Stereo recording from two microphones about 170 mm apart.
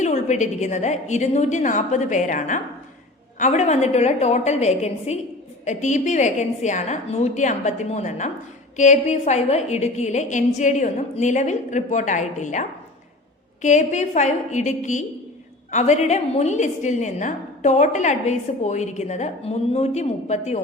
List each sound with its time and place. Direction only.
0.0 s a woman's voice: 45° left (ahead or behind)